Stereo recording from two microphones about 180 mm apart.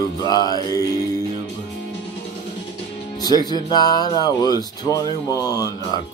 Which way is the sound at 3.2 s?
20° left (ahead or behind).